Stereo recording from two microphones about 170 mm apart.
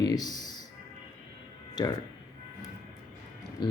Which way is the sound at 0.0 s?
25° left (ahead or behind).